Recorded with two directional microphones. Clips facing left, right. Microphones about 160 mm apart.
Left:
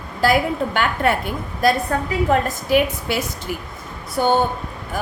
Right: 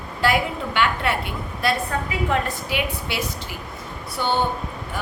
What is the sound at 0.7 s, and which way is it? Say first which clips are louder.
A woman's voice: left 1 dB; 45° left (ahead or behind).